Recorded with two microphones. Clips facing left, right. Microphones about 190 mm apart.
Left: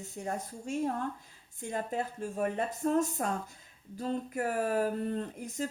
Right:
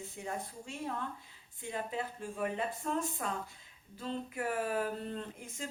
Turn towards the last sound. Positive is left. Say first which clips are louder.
# left 7 dB
turn(degrees=40)  # may be behind; listen again after turning